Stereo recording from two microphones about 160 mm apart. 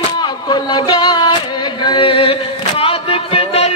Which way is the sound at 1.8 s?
35° left (ahead or behind).